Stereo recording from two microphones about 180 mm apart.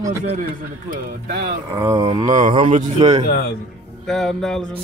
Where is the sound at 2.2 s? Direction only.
45° right (ahead or behind).